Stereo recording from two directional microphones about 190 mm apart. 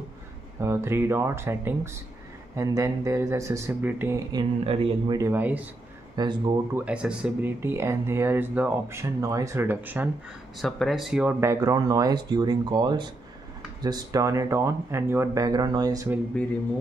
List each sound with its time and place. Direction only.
0.6 s speech: 15° right (ahead or behind)
5.2 s speech: 10° right (ahead or behind)
6.1 s speech: 25° right (ahead or behind)
6.7 s speech: 5° right (ahead or behind)